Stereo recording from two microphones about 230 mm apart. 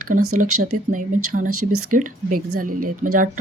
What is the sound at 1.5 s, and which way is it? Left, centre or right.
Speech, right.